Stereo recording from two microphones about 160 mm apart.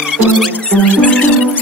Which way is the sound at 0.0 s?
5° right (ahead or behind).